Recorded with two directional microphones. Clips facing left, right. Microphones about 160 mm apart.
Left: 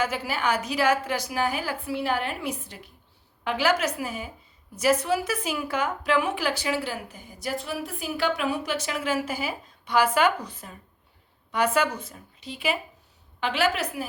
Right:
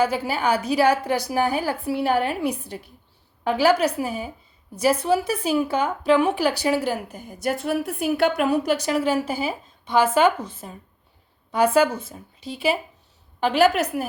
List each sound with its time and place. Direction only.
0.0 s a woman's voice: 30° right (ahead or behind)